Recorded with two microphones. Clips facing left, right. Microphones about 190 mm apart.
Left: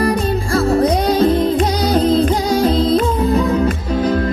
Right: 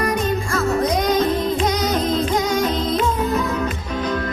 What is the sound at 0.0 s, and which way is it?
Music, 35° left (ahead or behind).